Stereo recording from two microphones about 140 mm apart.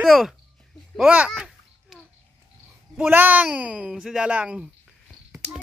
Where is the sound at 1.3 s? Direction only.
Centre (ahead or behind).